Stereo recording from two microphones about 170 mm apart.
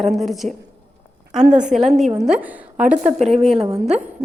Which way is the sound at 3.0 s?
40° right (ahead or behind).